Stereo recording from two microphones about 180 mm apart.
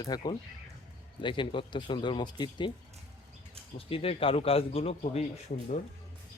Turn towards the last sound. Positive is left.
turn(degrees=45)  # may be behind; listen again after turning